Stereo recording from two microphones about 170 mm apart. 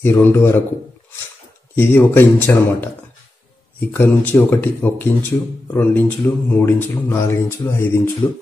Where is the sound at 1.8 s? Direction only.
10° left (ahead or behind).